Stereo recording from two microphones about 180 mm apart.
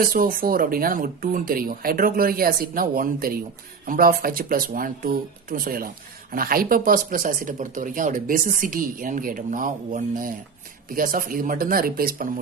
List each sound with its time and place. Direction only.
0.0 s speech: 55° right (ahead or behind)